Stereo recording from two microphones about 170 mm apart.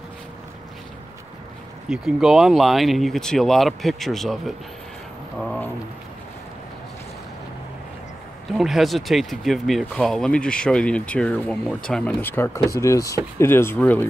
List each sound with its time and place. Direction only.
1.9 s speech: centre (ahead or behind)
8.5 s speech: centre (ahead or behind)